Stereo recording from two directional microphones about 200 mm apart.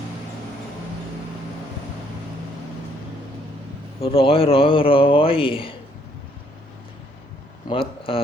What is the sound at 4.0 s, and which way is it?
Speech, 30° left (ahead or behind).